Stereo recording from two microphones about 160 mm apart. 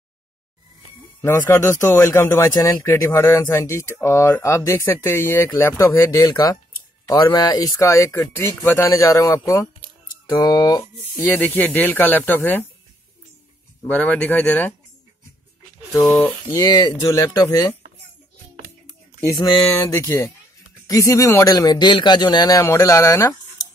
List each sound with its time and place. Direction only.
1.2 s a man's voice: 15° left (ahead or behind)
13.8 s a man's voice: 10° left (ahead or behind)
15.9 s a man's voice: 10° left (ahead or behind)
16.5 s speech: 25° left (ahead or behind)
19.3 s a man's voice: 15° left (ahead or behind)